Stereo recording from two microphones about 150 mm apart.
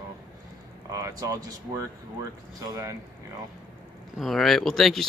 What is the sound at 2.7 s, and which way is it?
Speech, 20° right (ahead or behind).